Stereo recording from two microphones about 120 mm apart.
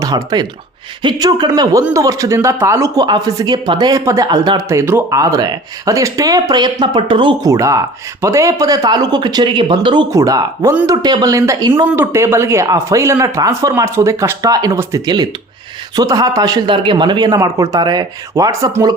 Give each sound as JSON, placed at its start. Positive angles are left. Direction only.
{"t": 0.0, "sound": "speech", "side_deg": -30}
{"t": 7.4, "sound": "speech", "side_deg": -25}
{"t": 10.1, "sound": "speech", "side_deg": -30}